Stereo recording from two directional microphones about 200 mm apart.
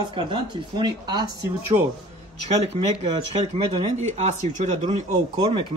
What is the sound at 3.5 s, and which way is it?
Speech, 35° right (ahead or behind).